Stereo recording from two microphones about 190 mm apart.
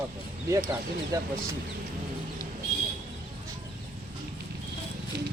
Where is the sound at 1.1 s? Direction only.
15° right (ahead or behind).